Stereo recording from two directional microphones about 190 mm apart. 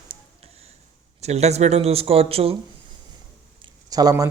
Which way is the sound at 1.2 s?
35° right (ahead or behind).